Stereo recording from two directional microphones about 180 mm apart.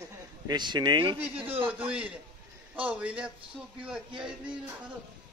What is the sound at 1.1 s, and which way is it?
A man's voice, 10° right (ahead or behind).